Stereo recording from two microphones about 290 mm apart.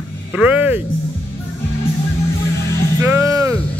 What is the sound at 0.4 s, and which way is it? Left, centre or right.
Speech, centre.